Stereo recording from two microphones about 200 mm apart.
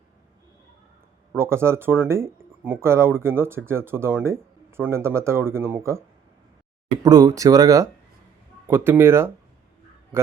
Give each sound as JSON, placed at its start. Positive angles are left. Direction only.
{"t": 1.4, "sound": "speech", "side_deg": -15}
{"t": 7.0, "sound": "speech", "side_deg": -15}